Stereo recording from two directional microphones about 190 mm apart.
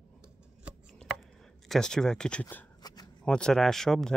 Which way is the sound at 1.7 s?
5° left (ahead or behind).